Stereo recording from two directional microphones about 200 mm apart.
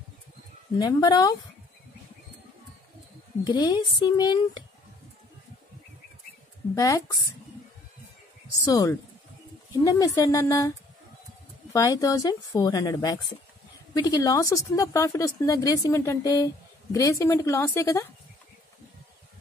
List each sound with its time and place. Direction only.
0.7 s speech: 20° left (ahead or behind)
3.4 s speech: 20° left (ahead or behind)
6.7 s a woman's voice: 15° left (ahead or behind)
8.5 s a woman's voice: 15° left (ahead or behind)
11.7 s a woman's voice: 15° left (ahead or behind)